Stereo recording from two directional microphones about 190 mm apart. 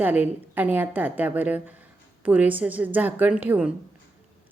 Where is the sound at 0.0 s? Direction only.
10° right (ahead or behind).